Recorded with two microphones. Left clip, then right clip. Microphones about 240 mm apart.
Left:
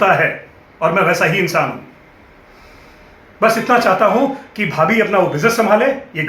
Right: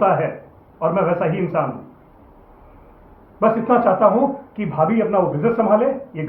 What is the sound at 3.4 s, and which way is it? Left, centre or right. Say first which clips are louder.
A man's voice: left 3 dB; centre.